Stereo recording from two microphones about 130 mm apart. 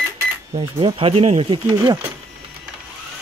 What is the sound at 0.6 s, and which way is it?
Speech, 40° right (ahead or behind).